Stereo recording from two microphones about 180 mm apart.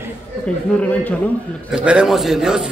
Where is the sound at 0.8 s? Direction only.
10° left (ahead or behind).